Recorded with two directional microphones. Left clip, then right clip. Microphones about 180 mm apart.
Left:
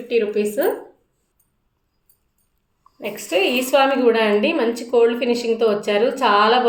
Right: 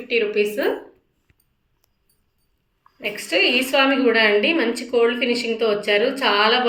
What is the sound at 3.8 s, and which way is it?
A woman's voice, 35° left (ahead or behind).